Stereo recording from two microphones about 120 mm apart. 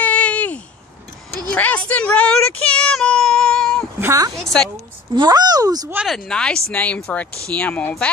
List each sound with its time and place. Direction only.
0.0 s a sound: 10° left (ahead or behind)
4.0 s a woman's voice: 25° right (ahead or behind)
6.0 s speech: 5° left (ahead or behind)